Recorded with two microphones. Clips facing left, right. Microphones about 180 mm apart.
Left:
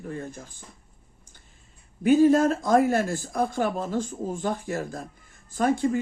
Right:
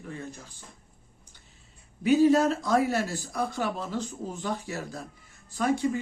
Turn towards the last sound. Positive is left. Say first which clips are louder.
# left 3 dB
turn(degrees=50)  # may be behind; listen again after turning